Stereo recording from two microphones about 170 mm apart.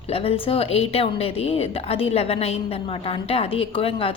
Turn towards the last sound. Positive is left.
turn(degrees=35)  # may be behind; listen again after turning